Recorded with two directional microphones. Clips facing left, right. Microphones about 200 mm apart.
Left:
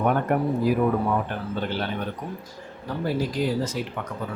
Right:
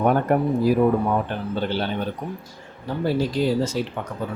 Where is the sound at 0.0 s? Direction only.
35° right (ahead or behind).